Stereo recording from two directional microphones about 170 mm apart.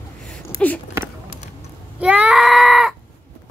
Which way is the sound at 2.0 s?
5° right (ahead or behind).